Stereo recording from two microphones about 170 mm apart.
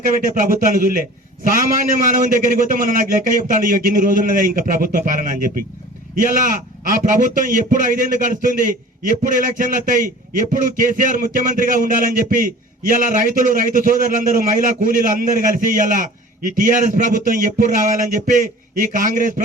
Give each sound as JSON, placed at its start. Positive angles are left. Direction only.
{"t": 0.1, "sound": "a man's voice", "side_deg": -55}